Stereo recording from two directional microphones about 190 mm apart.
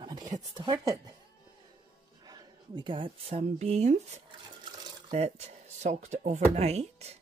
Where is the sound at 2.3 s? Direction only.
25° right (ahead or behind).